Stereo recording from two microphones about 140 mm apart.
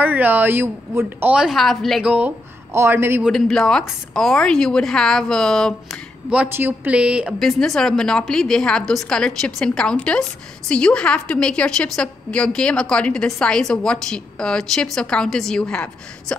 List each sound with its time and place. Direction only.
0.0 s a woman's voice: 10° right (ahead or behind)
2.1 s speech: 15° right (ahead or behind)
3.3 s a woman's voice: centre (ahead or behind)
6.3 s a woman's voice: 10° right (ahead or behind)
7.4 s a woman's voice: centre (ahead or behind)